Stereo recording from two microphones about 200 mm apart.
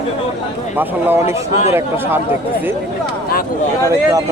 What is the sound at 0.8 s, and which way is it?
Speech, 10° right (ahead or behind).